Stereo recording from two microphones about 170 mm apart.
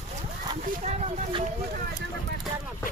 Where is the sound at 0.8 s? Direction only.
40° right (ahead or behind).